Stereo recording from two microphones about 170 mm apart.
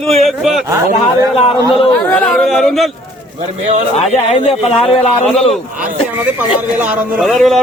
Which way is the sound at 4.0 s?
35° left (ahead or behind).